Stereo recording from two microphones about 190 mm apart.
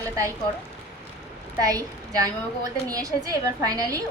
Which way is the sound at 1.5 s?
20° right (ahead or behind).